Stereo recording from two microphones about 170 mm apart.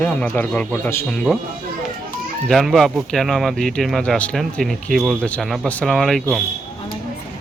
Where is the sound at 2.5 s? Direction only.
Centre (ahead or behind).